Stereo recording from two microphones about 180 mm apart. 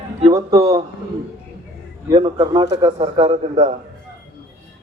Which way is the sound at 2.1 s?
25° right (ahead or behind).